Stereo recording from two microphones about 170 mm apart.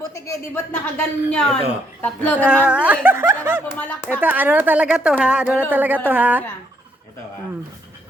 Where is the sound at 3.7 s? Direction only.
10° left (ahead or behind).